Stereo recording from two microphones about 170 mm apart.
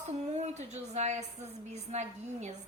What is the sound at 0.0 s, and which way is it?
A woman's voice, 40° right (ahead or behind).